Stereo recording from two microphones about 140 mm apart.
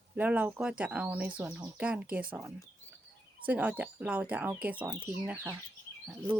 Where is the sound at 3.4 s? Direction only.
10° right (ahead or behind).